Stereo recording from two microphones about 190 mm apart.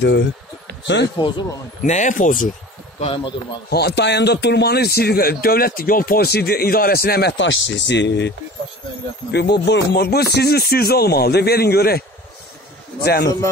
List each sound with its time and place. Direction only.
1.1 s a man's voice: 25° left (ahead or behind)
1.8 s speech: 40° left (ahead or behind)
3.0 s a man's voice: 30° left (ahead or behind)
3.7 s a man's voice: 60° left (ahead or behind)
9.3 s a man's voice: 60° left (ahead or behind)
13.0 s a man's voice: 55° left (ahead or behind)